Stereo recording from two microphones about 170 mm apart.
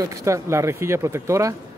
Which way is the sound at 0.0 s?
20° right (ahead or behind).